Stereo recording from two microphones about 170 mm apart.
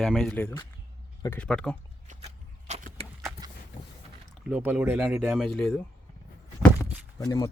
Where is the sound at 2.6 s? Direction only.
40° right (ahead or behind).